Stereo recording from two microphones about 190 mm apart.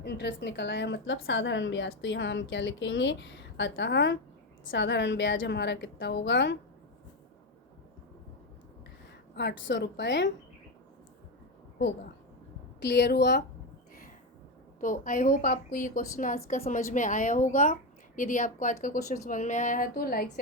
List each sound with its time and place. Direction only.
0.0 s a woman's voice: 70° left (ahead or behind)
9.3 s a woman's voice: 60° left (ahead or behind)
12.8 s a woman's voice: 65° left (ahead or behind)
14.8 s a woman's voice: 45° left (ahead or behind)